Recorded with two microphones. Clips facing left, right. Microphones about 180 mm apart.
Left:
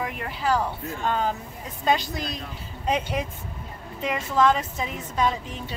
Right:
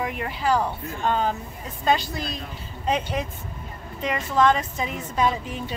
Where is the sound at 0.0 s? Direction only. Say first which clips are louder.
Right 2 dB; centre (ahead or behind).